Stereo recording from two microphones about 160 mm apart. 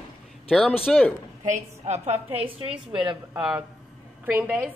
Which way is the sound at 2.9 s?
30° right (ahead or behind).